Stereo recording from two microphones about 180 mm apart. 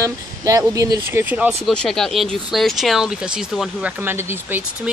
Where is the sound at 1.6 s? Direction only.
5° left (ahead or behind).